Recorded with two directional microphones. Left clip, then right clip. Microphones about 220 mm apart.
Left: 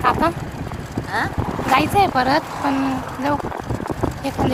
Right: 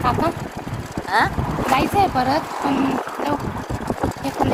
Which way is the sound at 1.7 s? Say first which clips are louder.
Left 2 dB; 20° left (ahead or behind).